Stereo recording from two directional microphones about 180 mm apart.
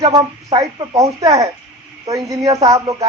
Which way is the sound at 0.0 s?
20° right (ahead or behind).